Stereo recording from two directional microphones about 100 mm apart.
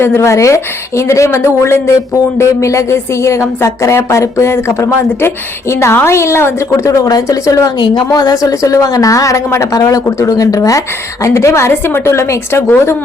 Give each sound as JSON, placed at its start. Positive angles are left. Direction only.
{"t": 0.0, "sound": "speech", "side_deg": 25}
{"t": 7.8, "sound": "a woman's voice", "side_deg": 45}